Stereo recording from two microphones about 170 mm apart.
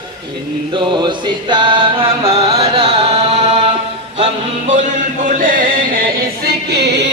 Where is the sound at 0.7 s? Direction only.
25° right (ahead or behind).